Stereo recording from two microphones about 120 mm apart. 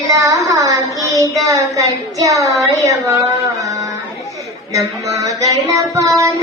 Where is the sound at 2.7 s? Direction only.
25° right (ahead or behind).